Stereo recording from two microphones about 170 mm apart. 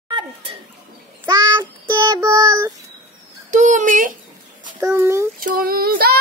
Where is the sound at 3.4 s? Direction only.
45° right (ahead or behind).